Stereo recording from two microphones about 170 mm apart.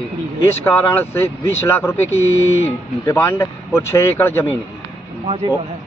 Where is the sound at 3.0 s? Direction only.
15° left (ahead or behind).